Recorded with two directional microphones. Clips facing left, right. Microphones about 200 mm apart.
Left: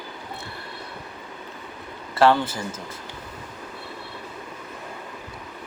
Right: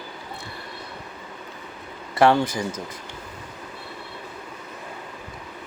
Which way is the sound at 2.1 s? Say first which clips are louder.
Right 1 dB; 15° right (ahead or behind).